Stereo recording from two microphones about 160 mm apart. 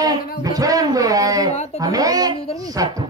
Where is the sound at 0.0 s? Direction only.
25° right (ahead or behind).